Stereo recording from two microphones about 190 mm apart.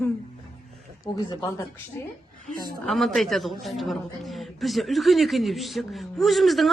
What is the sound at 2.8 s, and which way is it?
A woman's voice, centre (ahead or behind).